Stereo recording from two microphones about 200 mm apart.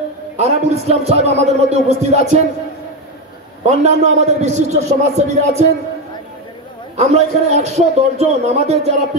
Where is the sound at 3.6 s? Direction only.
35° right (ahead or behind).